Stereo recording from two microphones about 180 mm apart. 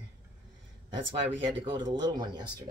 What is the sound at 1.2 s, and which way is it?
Speech, 25° right (ahead or behind).